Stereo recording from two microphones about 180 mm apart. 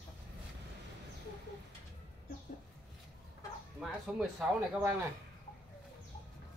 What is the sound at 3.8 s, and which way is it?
Speech, 5° right (ahead or behind).